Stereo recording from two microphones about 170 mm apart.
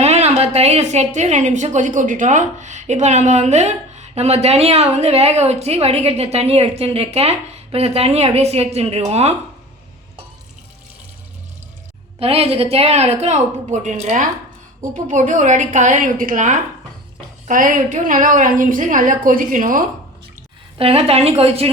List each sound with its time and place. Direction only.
0.0 s a woman's voice: 40° right (ahead or behind)
12.2 s a woman's voice: 35° right (ahead or behind); by 19.8 s 50° right (ahead or behind)
20.7 s a woman's voice: 35° right (ahead or behind)